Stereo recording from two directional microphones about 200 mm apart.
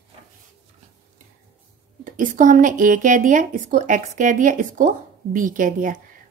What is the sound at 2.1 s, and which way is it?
A woman's voice, 40° right (ahead or behind).